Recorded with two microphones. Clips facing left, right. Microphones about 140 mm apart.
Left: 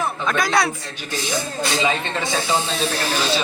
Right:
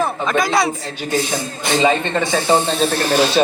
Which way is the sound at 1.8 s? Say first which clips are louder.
Right 8 dB; 50° right (ahead or behind).